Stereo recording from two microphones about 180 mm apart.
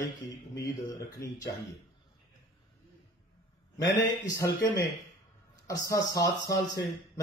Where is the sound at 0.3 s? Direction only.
20° left (ahead or behind).